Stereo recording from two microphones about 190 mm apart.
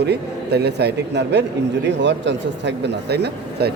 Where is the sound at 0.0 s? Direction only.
60° right (ahead or behind).